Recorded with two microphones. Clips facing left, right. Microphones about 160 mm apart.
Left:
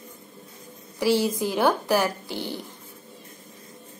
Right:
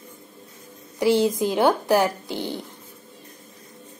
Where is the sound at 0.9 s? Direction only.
15° right (ahead or behind).